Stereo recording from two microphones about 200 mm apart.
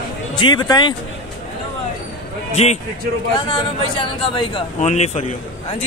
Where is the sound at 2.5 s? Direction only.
30° left (ahead or behind).